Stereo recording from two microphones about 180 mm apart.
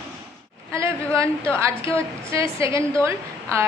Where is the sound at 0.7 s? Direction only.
15° right (ahead or behind).